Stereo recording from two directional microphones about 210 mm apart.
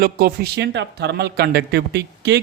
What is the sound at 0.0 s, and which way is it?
A man's voice, 45° right (ahead or behind).